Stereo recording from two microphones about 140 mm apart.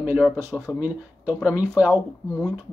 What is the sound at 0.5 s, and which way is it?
Speech, 5° left (ahead or behind).